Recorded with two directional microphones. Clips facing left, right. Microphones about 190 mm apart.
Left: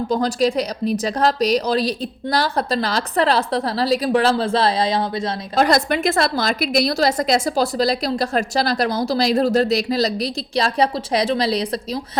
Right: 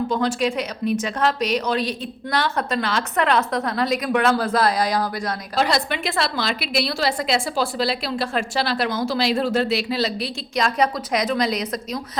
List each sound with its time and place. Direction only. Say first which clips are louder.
0.1 s a woman's voice: left 3 dB; 35° left (ahead or behind)
5.5 s a woman's voice: left 5 dB; 45° left (ahead or behind)